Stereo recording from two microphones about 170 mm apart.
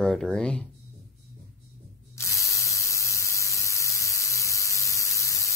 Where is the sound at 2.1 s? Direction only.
15° left (ahead or behind).